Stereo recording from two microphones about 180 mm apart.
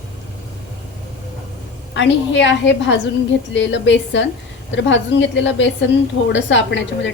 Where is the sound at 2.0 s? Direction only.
90° left.